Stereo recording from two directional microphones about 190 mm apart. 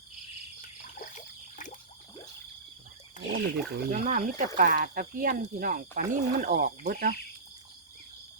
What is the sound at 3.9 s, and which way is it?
Speech, 40° right (ahead or behind).